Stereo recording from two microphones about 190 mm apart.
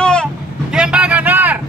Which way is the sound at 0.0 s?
5° left (ahead or behind).